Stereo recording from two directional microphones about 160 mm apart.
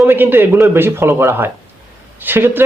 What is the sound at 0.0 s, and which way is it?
Speech, 15° right (ahead or behind).